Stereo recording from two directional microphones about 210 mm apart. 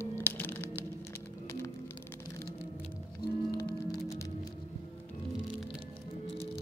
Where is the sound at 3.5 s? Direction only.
50° left (ahead or behind).